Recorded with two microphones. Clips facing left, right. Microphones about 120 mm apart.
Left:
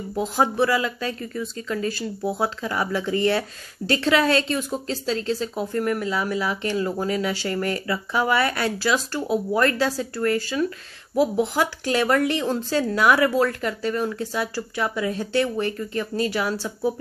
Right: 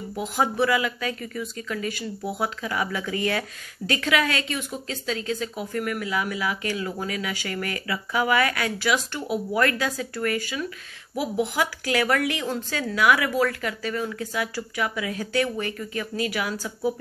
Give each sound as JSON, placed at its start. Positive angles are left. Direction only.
{"t": 0.1, "sound": "speech", "side_deg": 30}